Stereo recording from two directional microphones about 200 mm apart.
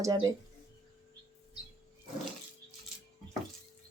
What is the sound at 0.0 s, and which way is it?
Speech, 15° right (ahead or behind).